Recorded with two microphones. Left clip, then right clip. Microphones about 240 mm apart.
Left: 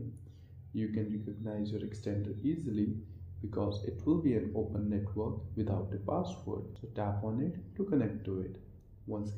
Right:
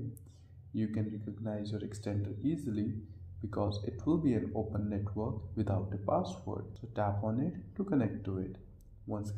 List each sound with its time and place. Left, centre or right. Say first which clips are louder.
0.7 s speech: left 1 dB; right